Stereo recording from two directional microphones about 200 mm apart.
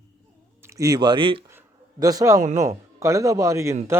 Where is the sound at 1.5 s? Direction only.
15° right (ahead or behind).